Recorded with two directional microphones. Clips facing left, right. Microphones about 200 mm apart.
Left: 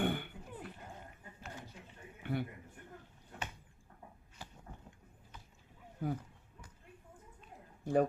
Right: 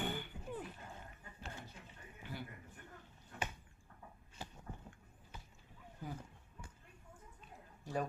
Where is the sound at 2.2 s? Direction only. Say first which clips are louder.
Left 10 dB; 60° left (ahead or behind).